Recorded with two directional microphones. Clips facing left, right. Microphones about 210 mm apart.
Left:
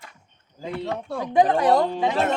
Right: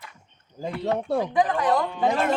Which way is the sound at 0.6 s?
40° right (ahead or behind).